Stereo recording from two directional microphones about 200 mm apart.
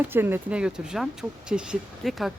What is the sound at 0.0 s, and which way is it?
A woman's voice, 10° right (ahead or behind).